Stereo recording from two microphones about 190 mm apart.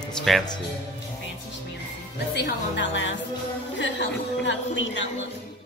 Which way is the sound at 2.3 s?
70° left (ahead or behind).